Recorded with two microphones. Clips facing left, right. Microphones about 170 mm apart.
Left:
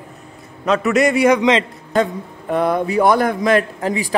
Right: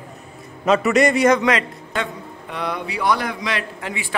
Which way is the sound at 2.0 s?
40° left (ahead or behind).